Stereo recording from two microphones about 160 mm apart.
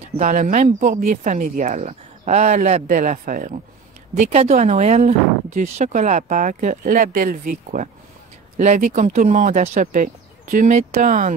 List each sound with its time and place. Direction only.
0.2 s speech: 55° right (ahead or behind)
4.2 s speech: 45° right (ahead or behind)